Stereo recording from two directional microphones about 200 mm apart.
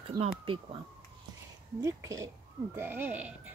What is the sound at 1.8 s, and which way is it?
A woman's voice, 15° right (ahead or behind).